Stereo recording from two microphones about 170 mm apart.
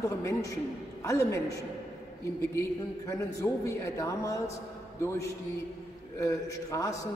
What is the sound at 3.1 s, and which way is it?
A man's voice, 20° left (ahead or behind).